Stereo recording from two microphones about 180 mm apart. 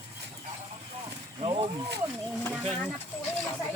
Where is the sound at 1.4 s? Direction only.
30° right (ahead or behind).